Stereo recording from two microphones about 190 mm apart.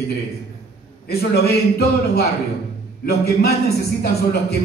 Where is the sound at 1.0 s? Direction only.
55° left (ahead or behind).